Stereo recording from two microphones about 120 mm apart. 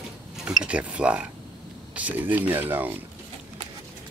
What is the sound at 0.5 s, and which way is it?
Speech, 10° right (ahead or behind).